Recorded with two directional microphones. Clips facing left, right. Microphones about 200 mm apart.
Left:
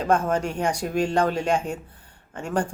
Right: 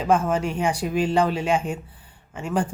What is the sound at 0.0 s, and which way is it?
Speech, 5° right (ahead or behind).